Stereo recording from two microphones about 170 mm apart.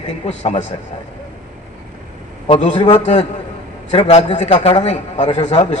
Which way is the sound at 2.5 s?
40° left (ahead or behind).